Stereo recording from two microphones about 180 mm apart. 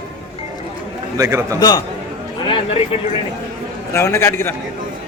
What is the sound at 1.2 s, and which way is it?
Speech, 15° right (ahead or behind).